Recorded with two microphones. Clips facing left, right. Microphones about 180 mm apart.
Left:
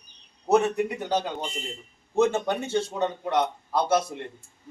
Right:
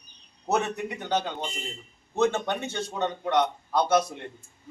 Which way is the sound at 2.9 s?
5° left (ahead or behind).